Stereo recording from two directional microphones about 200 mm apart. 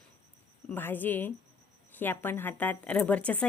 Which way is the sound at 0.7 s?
10° left (ahead or behind).